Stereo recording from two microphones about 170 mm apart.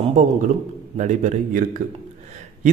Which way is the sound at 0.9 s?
45° right (ahead or behind).